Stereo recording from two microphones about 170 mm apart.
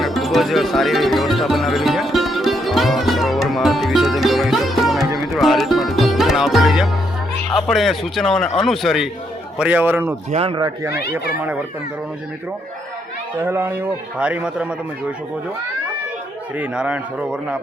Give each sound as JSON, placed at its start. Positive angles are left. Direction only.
{"t": 0.0, "sound": "music", "side_deg": 0}
{"t": 7.5, "sound": "a man's voice", "side_deg": 0}
{"t": 10.3, "sound": "speech", "side_deg": -30}
{"t": 11.1, "sound": "a man's voice", "side_deg": -10}
{"t": 13.4, "sound": "a man's voice", "side_deg": -15}
{"t": 16.6, "sound": "a man's voice", "side_deg": -5}